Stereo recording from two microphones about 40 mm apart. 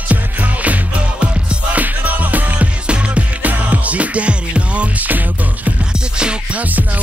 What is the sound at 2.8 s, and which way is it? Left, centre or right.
Music, right.